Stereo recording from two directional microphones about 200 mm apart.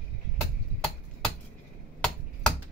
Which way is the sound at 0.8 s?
5° left (ahead or behind).